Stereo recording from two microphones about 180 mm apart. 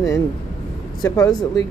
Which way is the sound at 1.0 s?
20° left (ahead or behind).